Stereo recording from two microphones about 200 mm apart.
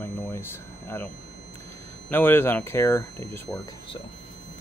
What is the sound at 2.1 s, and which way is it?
Speech, 10° left (ahead or behind).